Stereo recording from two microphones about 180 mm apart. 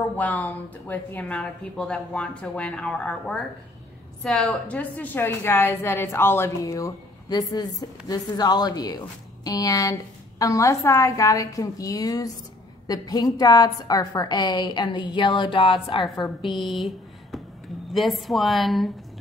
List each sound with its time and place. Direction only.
0.1 s a woman's voice: 10° left (ahead or behind); by 16.5 s 25° left (ahead or behind)
16.5 s speech: centre (ahead or behind)